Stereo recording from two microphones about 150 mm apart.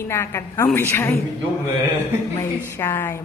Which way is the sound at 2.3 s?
15° left (ahead or behind).